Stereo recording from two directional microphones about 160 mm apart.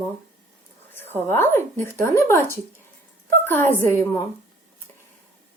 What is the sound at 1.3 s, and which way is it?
A child's voice, 15° left (ahead or behind).